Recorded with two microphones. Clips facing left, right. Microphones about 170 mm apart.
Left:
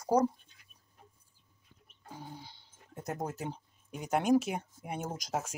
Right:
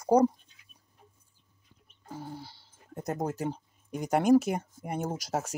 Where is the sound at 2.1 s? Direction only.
10° right (ahead or behind).